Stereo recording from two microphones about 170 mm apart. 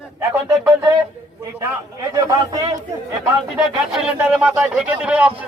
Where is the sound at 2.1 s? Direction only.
25° right (ahead or behind).